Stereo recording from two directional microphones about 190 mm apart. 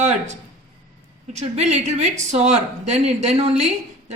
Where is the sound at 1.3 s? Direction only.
35° right (ahead or behind).